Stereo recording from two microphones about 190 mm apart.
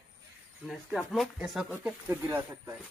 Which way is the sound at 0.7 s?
Centre (ahead or behind).